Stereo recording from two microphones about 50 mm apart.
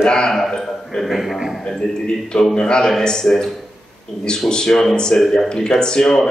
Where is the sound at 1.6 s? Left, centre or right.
Centre.